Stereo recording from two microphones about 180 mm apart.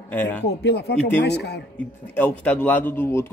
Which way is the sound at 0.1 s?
10° left (ahead or behind).